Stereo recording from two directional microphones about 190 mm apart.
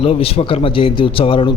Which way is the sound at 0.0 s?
30° left (ahead or behind).